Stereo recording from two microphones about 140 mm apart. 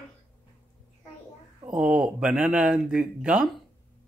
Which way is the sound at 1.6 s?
5° right (ahead or behind).